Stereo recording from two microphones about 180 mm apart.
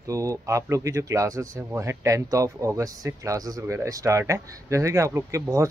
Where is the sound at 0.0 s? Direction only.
20° right (ahead or behind).